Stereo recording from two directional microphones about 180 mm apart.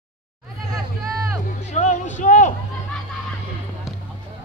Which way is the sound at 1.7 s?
40° left (ahead or behind).